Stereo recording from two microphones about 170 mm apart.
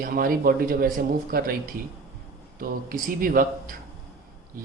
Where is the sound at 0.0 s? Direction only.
55° right (ahead or behind).